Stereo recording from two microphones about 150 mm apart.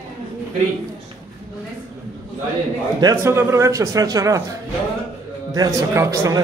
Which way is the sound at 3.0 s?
20° right (ahead or behind).